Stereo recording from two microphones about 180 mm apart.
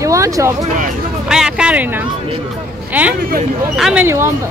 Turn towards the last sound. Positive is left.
turn(degrees=-15)  # may be behind; listen again after turning